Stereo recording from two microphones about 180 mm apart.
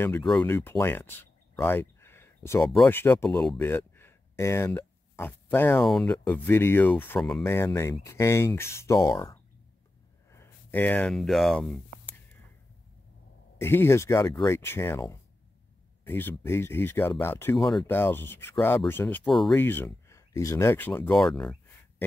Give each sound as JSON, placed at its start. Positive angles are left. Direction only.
{"t": 0.0, "sound": "speech", "side_deg": 5}
{"t": 5.8, "sound": "speech", "side_deg": 0}
{"t": 7.4, "sound": "speech", "side_deg": 15}
{"t": 10.3, "sound": "a sound", "side_deg": 10}
{"t": 13.6, "sound": "speech", "side_deg": 15}
{"t": 17.6, "sound": "speech", "side_deg": 0}
{"t": 17.9, "sound": "speech", "side_deg": 10}
{"t": 19.5, "sound": "speech", "side_deg": 10}